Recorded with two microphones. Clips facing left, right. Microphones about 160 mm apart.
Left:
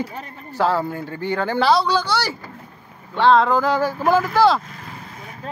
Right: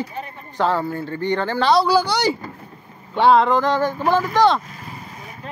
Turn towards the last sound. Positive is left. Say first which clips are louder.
# even
turn(degrees=5)  # may be behind; listen again after turning